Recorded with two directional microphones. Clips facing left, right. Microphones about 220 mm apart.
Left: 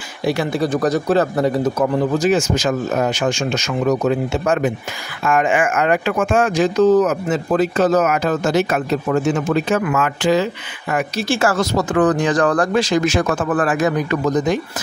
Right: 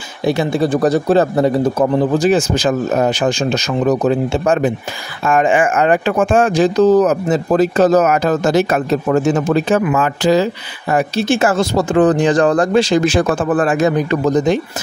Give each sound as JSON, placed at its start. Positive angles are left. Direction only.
{"t": 0.2, "sound": "speech", "side_deg": -25}
{"t": 11.2, "sound": "speech", "side_deg": -20}